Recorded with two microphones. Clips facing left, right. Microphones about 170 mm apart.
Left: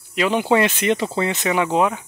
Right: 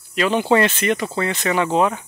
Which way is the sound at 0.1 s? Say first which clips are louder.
Right 1 dB; 15° left (ahead or behind).